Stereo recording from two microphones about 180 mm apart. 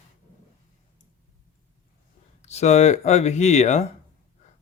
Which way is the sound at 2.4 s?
35° left (ahead or behind).